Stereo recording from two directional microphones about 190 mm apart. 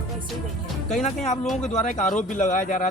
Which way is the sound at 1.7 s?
40° left (ahead or behind).